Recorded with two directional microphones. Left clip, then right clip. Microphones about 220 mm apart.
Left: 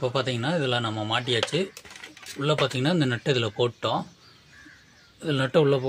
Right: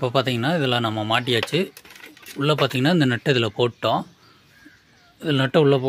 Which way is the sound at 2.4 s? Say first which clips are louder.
Right 4 dB; 35° right (ahead or behind).